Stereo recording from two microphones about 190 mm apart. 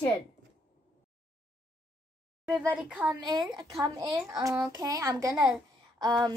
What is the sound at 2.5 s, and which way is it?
Speech, 5° right (ahead or behind).